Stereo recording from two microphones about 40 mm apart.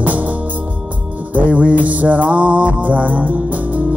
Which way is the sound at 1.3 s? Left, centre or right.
Right.